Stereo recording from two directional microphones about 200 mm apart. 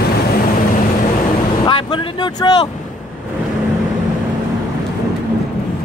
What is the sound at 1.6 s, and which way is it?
Vehicle, 25° left (ahead or behind).